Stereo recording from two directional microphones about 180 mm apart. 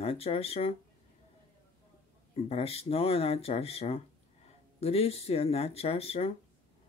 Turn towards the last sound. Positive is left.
turn(degrees=30)  # may be behind; listen again after turning